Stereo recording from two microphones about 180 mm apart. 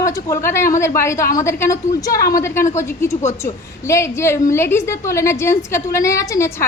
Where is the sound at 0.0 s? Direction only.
20° left (ahead or behind).